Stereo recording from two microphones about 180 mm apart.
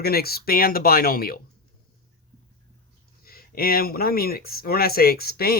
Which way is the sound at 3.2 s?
55° left (ahead or behind).